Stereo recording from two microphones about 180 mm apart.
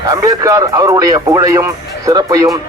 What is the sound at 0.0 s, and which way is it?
Speech, 20° right (ahead or behind).